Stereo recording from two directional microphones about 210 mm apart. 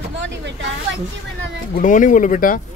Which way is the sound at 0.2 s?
60° right (ahead or behind).